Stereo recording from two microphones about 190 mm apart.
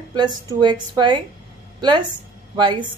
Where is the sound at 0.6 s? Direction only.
25° right (ahead or behind).